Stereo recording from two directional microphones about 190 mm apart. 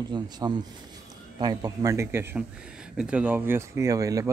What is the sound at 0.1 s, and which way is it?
Speech, 25° right (ahead or behind).